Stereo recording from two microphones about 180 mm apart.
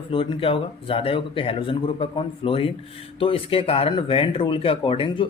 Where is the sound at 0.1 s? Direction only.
30° left (ahead or behind).